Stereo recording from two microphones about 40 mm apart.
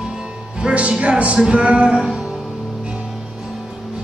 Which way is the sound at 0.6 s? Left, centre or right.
Right.